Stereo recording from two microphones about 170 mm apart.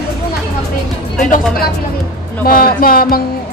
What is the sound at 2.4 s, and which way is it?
Speech, 60° left (ahead or behind).